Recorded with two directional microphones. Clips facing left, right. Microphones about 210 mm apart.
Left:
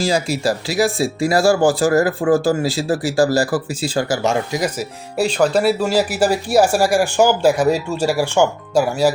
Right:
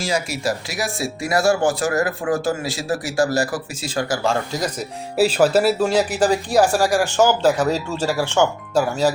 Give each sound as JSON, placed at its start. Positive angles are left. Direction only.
{"t": 0.0, "sound": "speech", "side_deg": 30}
{"t": 5.1, "sound": "speech", "side_deg": -5}